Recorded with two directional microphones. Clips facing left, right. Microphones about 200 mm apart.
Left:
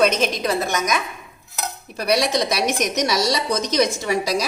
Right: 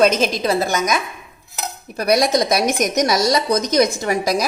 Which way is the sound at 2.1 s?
45° right (ahead or behind).